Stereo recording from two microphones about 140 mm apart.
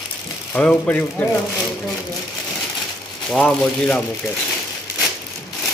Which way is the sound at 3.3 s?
5° left (ahead or behind).